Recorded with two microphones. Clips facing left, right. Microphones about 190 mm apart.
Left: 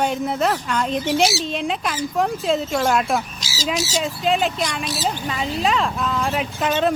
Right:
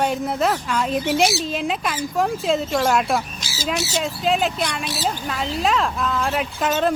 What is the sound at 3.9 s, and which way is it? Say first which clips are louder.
Speech: even; centre (ahead or behind).